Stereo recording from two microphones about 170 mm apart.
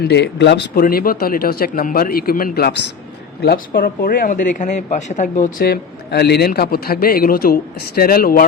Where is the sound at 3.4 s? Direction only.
60° left (ahead or behind).